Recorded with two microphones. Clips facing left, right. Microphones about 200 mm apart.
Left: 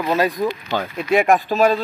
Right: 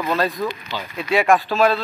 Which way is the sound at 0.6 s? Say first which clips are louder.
Left 4 dB; 50° left (ahead or behind).